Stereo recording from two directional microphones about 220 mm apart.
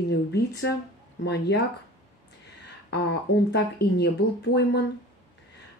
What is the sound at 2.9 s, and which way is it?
Speech, 50° left (ahead or behind).